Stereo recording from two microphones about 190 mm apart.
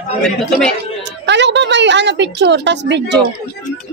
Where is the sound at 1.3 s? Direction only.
65° right (ahead or behind).